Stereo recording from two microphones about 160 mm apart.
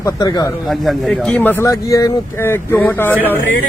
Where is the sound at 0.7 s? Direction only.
Centre (ahead or behind).